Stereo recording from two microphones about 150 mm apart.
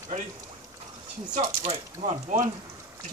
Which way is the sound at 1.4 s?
45° right (ahead or behind).